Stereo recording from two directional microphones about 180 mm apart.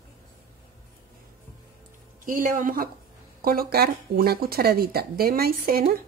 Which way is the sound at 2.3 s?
50° right (ahead or behind).